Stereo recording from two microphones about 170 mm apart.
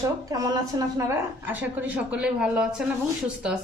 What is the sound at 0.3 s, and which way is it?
A woman's voice, 20° right (ahead or behind).